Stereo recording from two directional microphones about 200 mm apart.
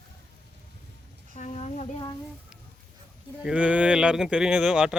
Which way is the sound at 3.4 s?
5° right (ahead or behind).